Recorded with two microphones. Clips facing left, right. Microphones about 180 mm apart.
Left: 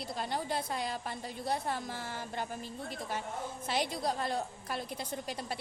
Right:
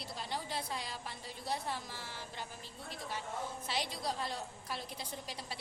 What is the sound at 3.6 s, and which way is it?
A woman's voice, 50° left (ahead or behind).